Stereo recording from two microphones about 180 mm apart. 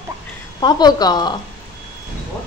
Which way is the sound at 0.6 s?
20° left (ahead or behind).